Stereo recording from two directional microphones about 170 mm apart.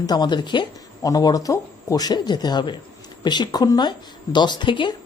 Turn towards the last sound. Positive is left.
turn(degrees=30)  # may be behind; listen again after turning